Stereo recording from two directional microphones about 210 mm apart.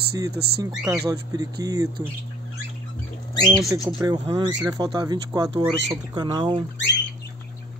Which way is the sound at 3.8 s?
20° right (ahead or behind).